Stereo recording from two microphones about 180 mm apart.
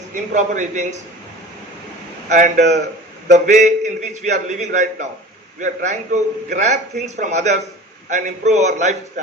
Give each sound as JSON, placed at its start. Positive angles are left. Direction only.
{"t": 0.1, "sound": "a man's voice", "side_deg": -45}
{"t": 2.3, "sound": "a man's voice", "side_deg": -40}